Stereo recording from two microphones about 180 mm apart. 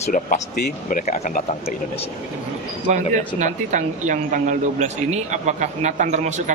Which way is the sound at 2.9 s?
45° right (ahead or behind).